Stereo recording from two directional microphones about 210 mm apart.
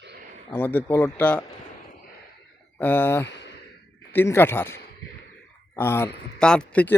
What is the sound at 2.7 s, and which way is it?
Speech, 10° left (ahead or behind).